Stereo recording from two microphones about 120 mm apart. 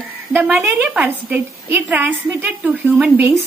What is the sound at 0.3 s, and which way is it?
A woman's voice, 15° right (ahead or behind).